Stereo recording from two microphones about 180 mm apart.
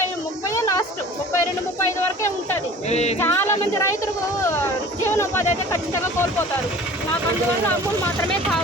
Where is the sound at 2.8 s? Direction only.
35° left (ahead or behind).